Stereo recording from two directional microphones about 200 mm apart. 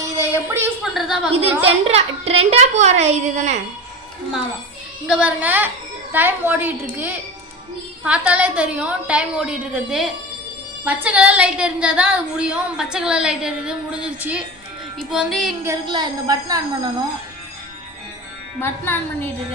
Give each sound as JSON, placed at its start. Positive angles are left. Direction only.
{"t": 0.0, "sound": "a woman's voice", "side_deg": -15}
{"t": 1.3, "sound": "a woman's voice", "side_deg": -30}
{"t": 5.0, "sound": "a woman's voice", "side_deg": -5}
{"t": 15.9, "sound": "a woman's voice", "side_deg": -20}
{"t": 18.6, "sound": "a woman's voice", "side_deg": 10}